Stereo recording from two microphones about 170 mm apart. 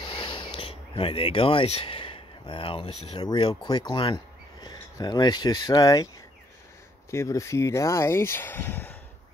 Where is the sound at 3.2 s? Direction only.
25° left (ahead or behind).